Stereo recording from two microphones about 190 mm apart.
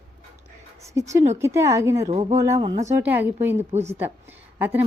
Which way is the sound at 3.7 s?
35° right (ahead or behind).